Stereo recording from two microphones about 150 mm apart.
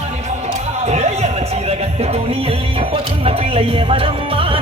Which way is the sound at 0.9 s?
45° right (ahead or behind).